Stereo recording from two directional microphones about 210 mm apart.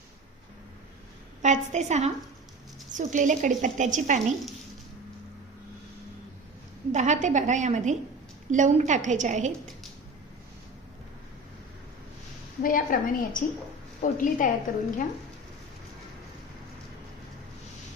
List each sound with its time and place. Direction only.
1.4 s a woman's voice: 35° right (ahead or behind)
6.9 s a woman's voice: 35° right (ahead or behind)
12.6 s a woman's voice: 40° left (ahead or behind)